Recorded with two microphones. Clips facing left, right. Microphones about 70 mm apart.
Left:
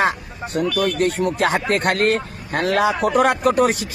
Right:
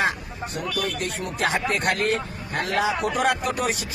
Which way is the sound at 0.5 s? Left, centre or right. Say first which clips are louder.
Left 9 dB; left.